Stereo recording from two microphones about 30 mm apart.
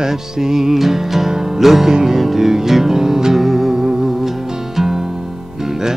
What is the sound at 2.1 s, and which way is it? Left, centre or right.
Music, centre.